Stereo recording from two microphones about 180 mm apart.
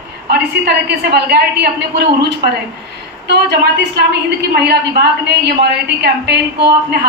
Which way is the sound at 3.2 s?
70° right (ahead or behind).